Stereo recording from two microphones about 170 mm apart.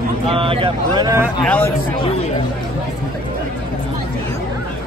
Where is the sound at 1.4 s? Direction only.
10° left (ahead or behind).